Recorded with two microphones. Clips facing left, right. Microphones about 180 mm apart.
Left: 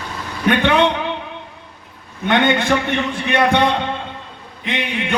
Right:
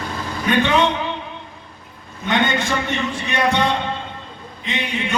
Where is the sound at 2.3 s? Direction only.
60° left (ahead or behind).